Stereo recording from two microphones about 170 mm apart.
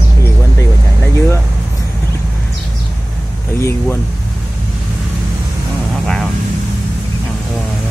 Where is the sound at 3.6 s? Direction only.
15° left (ahead or behind).